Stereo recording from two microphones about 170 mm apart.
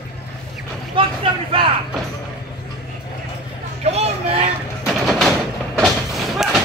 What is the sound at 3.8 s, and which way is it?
Speech, 40° right (ahead or behind).